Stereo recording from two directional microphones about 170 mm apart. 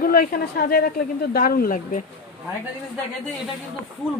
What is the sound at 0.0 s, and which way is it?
Speech, 55° left (ahead or behind).